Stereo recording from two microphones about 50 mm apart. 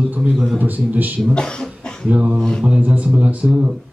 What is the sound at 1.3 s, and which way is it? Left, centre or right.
Speech, centre.